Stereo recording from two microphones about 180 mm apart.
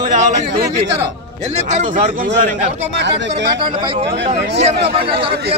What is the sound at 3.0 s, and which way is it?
Speech, 75° right (ahead or behind).